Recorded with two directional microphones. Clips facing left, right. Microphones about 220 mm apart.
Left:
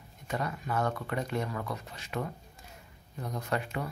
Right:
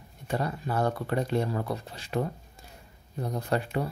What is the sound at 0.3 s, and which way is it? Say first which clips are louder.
Speech: right 3 dB; 35° right (ahead or behind).